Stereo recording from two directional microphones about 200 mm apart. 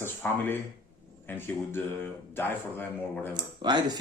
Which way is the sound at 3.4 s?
20° right (ahead or behind).